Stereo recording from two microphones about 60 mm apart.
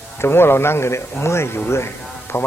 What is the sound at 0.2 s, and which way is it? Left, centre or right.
A man's voice, left.